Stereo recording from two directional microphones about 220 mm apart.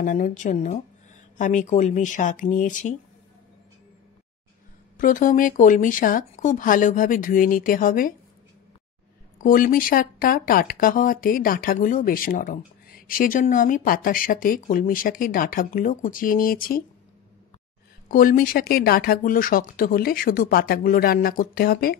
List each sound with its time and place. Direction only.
0.0 s speech: 35° left (ahead or behind)
4.9 s speech: 35° left (ahead or behind)
9.4 s speech: 40° left (ahead or behind)
18.0 s speech: 40° left (ahead or behind)